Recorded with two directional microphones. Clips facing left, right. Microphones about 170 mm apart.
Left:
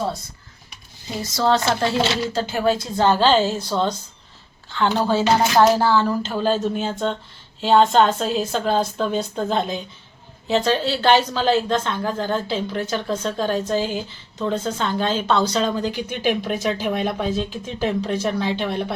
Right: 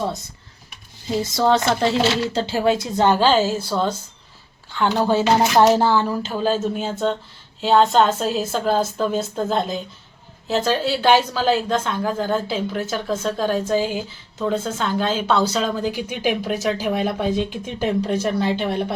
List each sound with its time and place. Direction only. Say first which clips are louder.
1.2 s a woman's voice: right 1 dB; 20° right (ahead or behind)